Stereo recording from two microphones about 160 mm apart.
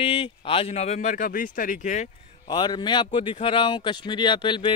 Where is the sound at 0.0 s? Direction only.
35° left (ahead or behind); by 2.0 s 55° left (ahead or behind).